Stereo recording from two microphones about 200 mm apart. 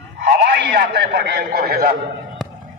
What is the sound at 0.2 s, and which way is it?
A man's voice, 55° right (ahead or behind).